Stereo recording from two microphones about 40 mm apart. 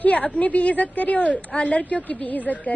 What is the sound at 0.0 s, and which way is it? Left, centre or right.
A woman's voice, left.